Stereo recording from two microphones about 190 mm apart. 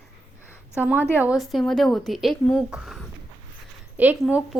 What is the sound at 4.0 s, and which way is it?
Speech, 10° right (ahead or behind).